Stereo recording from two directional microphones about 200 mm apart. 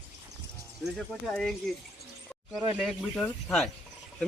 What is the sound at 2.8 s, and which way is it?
Speech, 5° left (ahead or behind).